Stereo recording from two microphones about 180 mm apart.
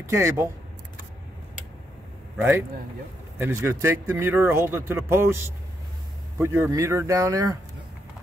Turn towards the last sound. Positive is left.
turn(degrees=-20)  # may be behind; listen again after turning